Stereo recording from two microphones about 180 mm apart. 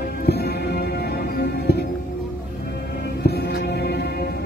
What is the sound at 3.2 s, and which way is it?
Music, 60° left (ahead or behind).